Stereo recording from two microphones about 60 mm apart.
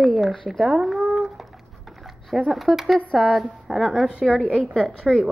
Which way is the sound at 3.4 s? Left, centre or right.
Centre.